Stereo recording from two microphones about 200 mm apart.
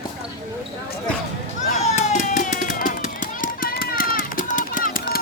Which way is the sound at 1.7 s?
35° left (ahead or behind).